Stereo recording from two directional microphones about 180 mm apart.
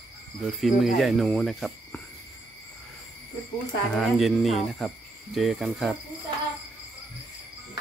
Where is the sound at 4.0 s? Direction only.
Centre (ahead or behind).